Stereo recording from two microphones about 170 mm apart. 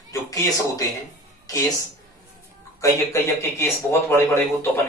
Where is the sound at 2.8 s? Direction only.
15° left (ahead or behind).